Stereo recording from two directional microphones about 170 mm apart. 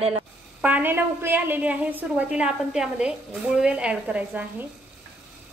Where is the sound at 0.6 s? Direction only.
10° right (ahead or behind).